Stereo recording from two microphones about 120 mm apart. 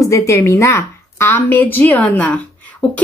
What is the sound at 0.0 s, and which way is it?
Speech, 25° left (ahead or behind).